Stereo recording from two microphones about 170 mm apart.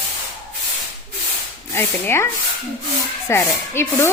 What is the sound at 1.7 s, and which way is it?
A woman's voice, 15° left (ahead or behind).